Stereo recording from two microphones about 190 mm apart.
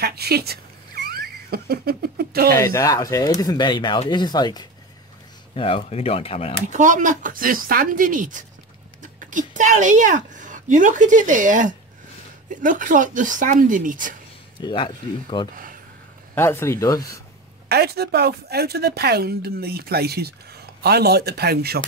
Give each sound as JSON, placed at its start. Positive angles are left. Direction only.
{"t": 0.0, "sound": "speech", "side_deg": -55}
{"t": 2.6, "sound": "speech", "side_deg": 15}
{"t": 6.7, "sound": "speech", "side_deg": -40}
{"t": 14.6, "sound": "speech", "side_deg": 25}
{"t": 15.5, "sound": "a sound", "side_deg": -45}
{"t": 16.3, "sound": "speech", "side_deg": 15}
{"t": 17.6, "sound": "a woman's voice", "side_deg": -55}